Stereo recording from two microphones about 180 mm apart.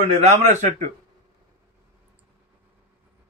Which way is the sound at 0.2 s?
40° right (ahead or behind).